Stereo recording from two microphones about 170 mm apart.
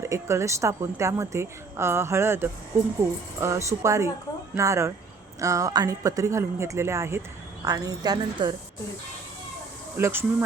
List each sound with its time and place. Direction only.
0.0 s a woman's voice: 15° right (ahead or behind)
10.0 s a woman's voice: 15° right (ahead or behind)